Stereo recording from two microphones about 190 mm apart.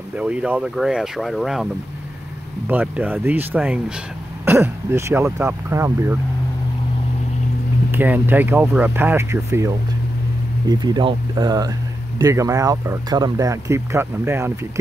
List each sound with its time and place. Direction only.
0.1 s speech: 5° right (ahead or behind)
2.7 s speech: 10° right (ahead or behind)
7.9 s speech: 10° right (ahead or behind)
10.7 s speech: 20° right (ahead or behind)